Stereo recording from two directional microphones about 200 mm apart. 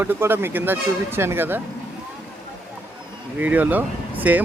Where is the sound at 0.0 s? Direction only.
10° right (ahead or behind).